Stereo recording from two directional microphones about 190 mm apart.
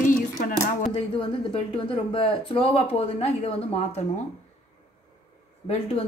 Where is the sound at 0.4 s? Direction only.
50° left (ahead or behind).